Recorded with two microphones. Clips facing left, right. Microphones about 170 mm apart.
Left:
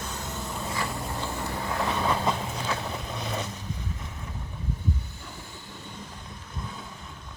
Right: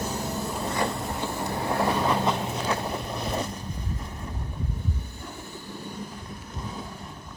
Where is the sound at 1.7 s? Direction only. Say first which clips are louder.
Right 3 dB; 40° right (ahead or behind).